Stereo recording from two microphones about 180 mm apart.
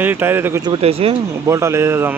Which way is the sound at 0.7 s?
35° right (ahead or behind).